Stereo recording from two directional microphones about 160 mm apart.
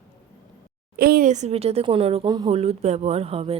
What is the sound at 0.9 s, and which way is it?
Speech, 70° right (ahead or behind).